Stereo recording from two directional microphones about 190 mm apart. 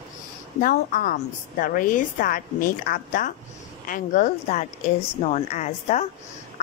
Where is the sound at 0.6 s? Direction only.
50° left (ahead or behind).